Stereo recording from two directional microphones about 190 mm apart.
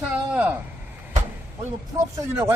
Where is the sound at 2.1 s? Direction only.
10° right (ahead or behind).